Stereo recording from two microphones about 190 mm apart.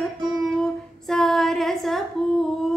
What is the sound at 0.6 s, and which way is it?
Female singing, centre (ahead or behind).